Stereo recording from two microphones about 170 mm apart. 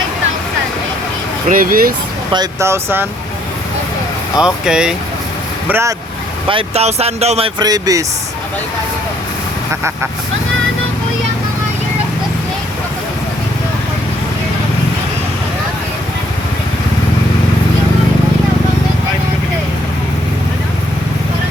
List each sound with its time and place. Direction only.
1.5 s speech: 55° right (ahead or behind)
2.3 s speech: 20° right (ahead or behind)
4.4 s speech: 5° right (ahead or behind)
6.5 s speech: 35° right (ahead or behind)
7.6 s speech: 20° right (ahead or behind)